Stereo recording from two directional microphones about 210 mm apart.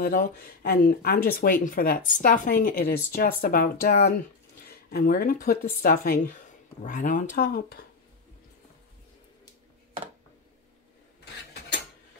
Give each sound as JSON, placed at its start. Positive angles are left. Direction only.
{"t": 0.0, "sound": "speech", "side_deg": 45}